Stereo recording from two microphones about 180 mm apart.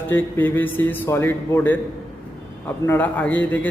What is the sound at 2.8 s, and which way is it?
Speech, 10° left (ahead or behind).